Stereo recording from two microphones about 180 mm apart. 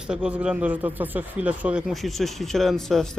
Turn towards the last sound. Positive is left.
turn(degrees=0)  # may be behind; listen again after turning